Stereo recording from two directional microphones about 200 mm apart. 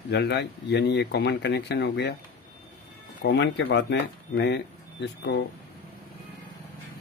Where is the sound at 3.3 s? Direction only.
60° left (ahead or behind).